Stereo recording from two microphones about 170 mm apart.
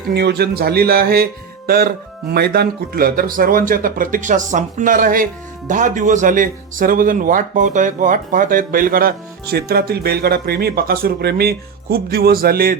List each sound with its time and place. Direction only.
0.1 s speech: 75° right (ahead or behind)